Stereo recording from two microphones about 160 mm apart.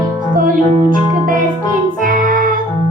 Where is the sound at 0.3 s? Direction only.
60° right (ahead or behind).